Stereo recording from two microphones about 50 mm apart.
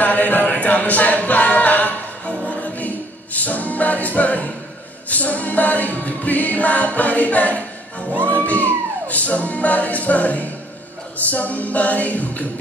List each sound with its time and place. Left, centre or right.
0.0 s a capella: left
2.4 s music: left
3.3 s a capella: left
8.2 s music: left
9.0 s a capella: left